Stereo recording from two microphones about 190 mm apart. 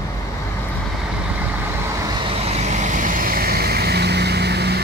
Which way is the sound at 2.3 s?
35° right (ahead or behind).